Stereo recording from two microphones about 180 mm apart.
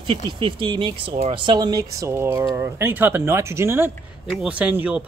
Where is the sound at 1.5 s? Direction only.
20° right (ahead or behind).